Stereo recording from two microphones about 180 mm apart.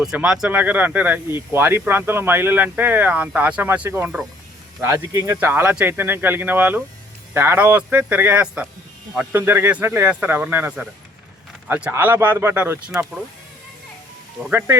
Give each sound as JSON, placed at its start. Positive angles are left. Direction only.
{"t": 0.0, "sound": "speech", "side_deg": -5}